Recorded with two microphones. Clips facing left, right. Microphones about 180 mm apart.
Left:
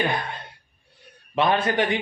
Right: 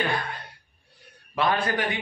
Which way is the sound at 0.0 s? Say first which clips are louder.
Left 2 dB; 25° left (ahead or behind).